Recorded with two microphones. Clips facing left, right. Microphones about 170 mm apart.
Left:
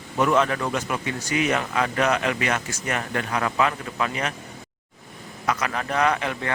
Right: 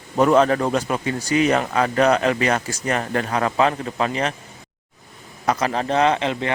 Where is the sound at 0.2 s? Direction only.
40° right (ahead or behind).